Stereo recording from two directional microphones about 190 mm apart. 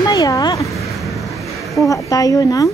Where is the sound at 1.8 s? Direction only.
15° left (ahead or behind).